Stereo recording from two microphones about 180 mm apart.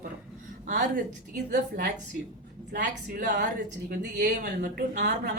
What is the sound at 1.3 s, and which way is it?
A woman's voice, 65° right (ahead or behind).